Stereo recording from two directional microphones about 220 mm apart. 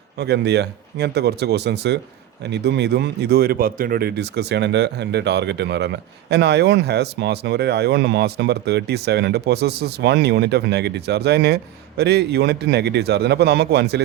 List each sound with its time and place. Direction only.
0.2 s speech: 50° right (ahead or behind)